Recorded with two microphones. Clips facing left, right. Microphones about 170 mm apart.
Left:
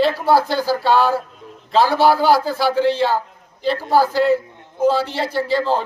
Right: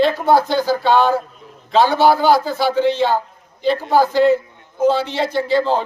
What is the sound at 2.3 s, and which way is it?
Speech, 35° left (ahead or behind).